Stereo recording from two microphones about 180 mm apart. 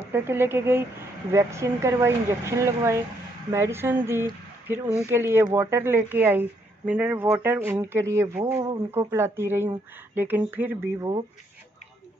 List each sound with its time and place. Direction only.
0.1 s speech: 15° right (ahead or behind)